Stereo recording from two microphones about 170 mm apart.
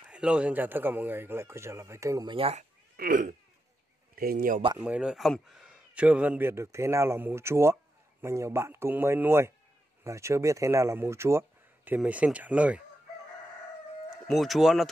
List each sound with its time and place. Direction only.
0.1 s a man's voice: 5° right (ahead or behind)
2.3 s speech: 35° right (ahead or behind)
3.0 s speech: 50° right (ahead or behind)
4.7 s a man's voice: 5° right (ahead or behind)
14.2 s speech: centre (ahead or behind)